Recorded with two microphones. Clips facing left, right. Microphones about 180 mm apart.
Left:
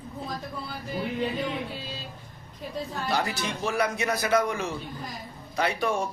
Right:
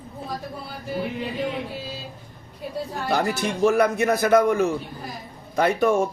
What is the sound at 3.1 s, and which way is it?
Speech, 50° right (ahead or behind).